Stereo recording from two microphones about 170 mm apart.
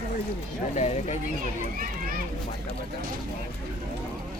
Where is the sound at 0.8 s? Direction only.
40° left (ahead or behind).